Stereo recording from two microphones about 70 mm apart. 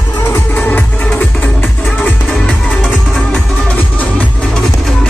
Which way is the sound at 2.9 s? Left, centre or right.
Centre.